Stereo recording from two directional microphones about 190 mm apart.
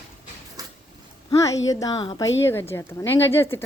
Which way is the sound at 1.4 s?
20° left (ahead or behind).